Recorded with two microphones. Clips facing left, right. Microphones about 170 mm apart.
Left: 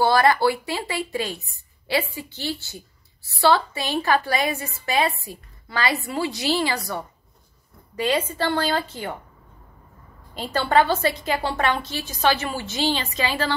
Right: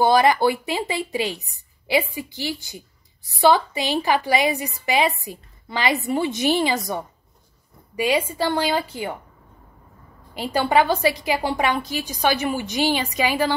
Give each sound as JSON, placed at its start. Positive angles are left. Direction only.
{"t": 0.0, "sound": "a woman's voice", "side_deg": -20}
{"t": 10.3, "sound": "a woman's voice", "side_deg": -10}